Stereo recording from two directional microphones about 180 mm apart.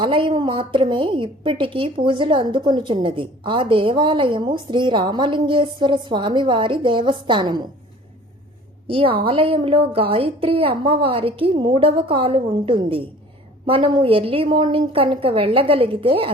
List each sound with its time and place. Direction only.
0.0 s a woman's voice: 30° right (ahead or behind)
8.9 s a woman's voice: 30° right (ahead or behind)